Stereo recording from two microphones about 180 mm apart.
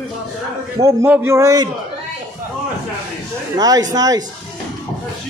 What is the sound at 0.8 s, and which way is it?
Speech, 10° right (ahead or behind).